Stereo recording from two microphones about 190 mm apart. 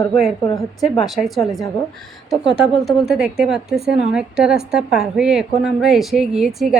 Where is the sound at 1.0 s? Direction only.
Centre (ahead or behind).